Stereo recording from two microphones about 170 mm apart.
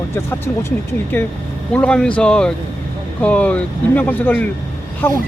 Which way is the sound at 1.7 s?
5° left (ahead or behind).